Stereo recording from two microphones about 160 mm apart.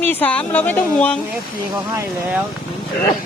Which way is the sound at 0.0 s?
10° left (ahead or behind).